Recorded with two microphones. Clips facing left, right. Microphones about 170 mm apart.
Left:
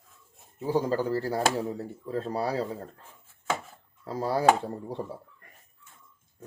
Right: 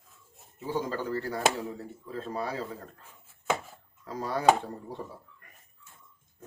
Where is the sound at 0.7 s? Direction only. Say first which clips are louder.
Left 5 dB; 35° left (ahead or behind).